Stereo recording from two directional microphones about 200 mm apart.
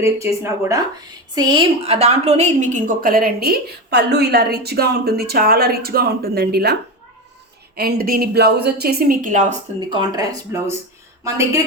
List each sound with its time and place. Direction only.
0.0 s a woman's voice: 15° right (ahead or behind); by 6.7 s 50° right (ahead or behind)
7.8 s a woman's voice: 50° right (ahead or behind)
9.9 s speech: 20° right (ahead or behind)